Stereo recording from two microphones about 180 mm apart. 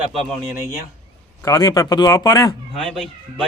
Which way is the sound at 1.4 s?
20° left (ahead or behind).